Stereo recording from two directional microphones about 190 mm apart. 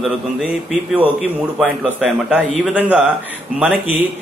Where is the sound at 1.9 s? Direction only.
5° right (ahead or behind).